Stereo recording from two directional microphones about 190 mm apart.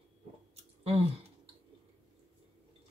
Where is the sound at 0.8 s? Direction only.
30° right (ahead or behind).